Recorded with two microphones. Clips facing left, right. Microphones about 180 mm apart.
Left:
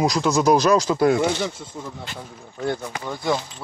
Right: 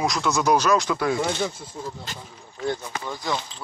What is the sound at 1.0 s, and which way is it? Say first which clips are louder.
Speech: left 6 dB; 55° left (ahead or behind).